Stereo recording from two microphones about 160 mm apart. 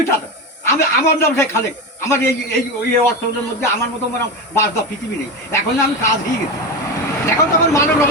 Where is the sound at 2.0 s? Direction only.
15° left (ahead or behind).